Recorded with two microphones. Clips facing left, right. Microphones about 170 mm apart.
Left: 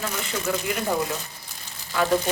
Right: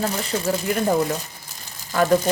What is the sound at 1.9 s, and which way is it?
Speech, 45° right (ahead or behind).